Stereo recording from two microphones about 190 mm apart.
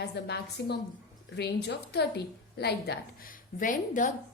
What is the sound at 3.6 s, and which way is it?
Speech, 45° left (ahead or behind).